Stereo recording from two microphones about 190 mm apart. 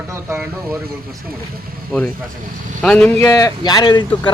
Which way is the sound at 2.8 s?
5° left (ahead or behind).